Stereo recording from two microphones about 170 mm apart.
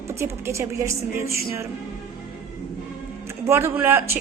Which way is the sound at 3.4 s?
15° right (ahead or behind).